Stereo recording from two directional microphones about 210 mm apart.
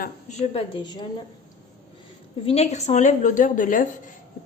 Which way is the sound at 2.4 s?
30° left (ahead or behind).